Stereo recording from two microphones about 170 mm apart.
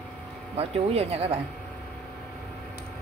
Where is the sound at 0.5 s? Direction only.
35° right (ahead or behind).